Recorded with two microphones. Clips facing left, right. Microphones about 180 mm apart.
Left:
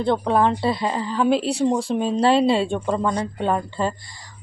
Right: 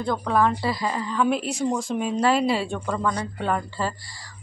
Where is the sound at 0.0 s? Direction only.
25° left (ahead or behind).